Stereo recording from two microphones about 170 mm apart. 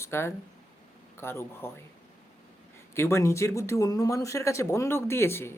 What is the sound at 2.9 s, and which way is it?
Speech, 15° left (ahead or behind).